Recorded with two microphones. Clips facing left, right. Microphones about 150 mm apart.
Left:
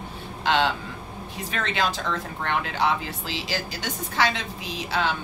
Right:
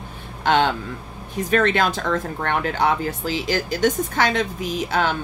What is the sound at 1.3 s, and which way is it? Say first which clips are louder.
A woman's voice: right 11 dB; 55° right (ahead or behind).